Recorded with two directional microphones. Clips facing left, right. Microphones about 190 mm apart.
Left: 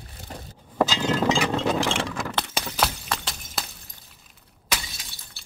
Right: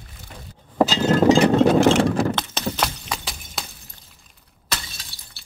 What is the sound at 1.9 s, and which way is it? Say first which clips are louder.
Horse: right 11 dB; 40° right (ahead or behind).